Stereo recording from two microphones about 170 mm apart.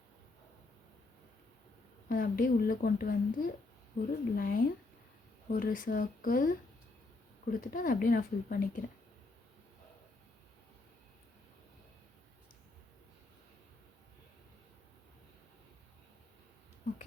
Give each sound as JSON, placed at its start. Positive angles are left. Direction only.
{"t": 2.0, "sound": "a woman's voice", "side_deg": 60}